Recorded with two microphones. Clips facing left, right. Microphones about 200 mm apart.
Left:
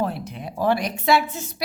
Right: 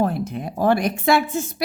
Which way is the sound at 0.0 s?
50° right (ahead or behind).